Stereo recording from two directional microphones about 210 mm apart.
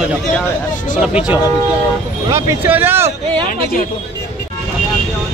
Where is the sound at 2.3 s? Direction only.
15° right (ahead or behind).